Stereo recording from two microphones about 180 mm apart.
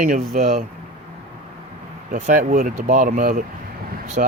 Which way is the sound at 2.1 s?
45° right (ahead or behind).